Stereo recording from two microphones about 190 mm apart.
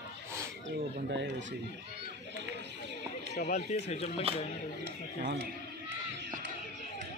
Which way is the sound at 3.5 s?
35° left (ahead or behind).